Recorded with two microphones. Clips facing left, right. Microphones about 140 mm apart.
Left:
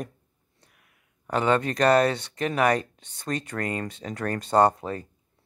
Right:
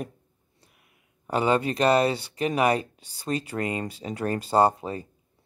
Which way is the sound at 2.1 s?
5° right (ahead or behind).